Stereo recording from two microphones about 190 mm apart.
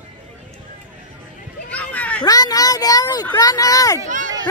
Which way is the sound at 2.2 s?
20° left (ahead or behind).